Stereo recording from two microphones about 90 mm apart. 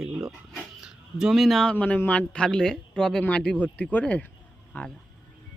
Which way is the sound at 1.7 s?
15° left (ahead or behind).